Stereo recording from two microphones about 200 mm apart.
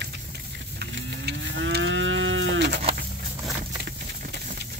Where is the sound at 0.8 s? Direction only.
55° right (ahead or behind).